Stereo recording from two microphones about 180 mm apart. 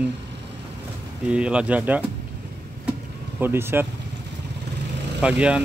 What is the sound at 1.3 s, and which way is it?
Speech, 5° right (ahead or behind).